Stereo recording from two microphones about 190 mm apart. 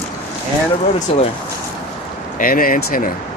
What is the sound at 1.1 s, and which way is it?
Speech, 30° left (ahead or behind).